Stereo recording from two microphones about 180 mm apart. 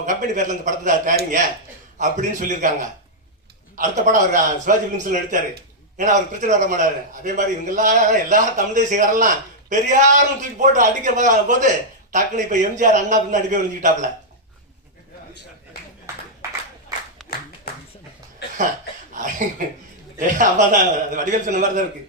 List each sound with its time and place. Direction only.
0.0 s a man's voice: 45° right (ahead or behind)
19.1 s a sound: 45° right (ahead or behind)
20.1 s a man's voice: 45° right (ahead or behind)